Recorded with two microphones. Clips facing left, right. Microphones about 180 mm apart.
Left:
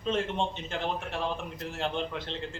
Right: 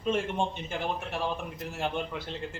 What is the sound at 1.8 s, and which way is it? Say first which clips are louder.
Speech: even; 10° right (ahead or behind).